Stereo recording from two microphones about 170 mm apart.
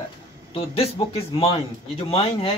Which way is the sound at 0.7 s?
35° left (ahead or behind).